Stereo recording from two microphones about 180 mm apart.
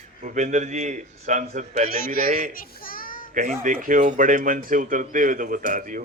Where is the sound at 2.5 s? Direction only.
50° left (ahead or behind).